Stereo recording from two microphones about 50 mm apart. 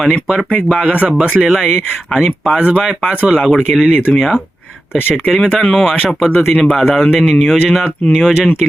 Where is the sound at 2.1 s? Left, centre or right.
Centre.